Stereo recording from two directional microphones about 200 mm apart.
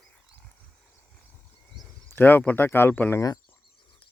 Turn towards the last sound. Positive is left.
turn(degrees=15)  # may be behind; listen again after turning